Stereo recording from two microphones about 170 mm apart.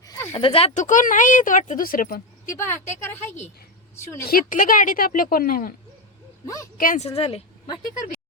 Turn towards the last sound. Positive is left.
turn(degrees=35)  # may be behind; listen again after turning